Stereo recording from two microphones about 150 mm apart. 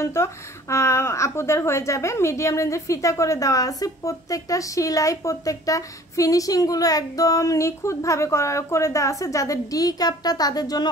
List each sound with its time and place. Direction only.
0.0 s a woman's voice: 20° left (ahead or behind)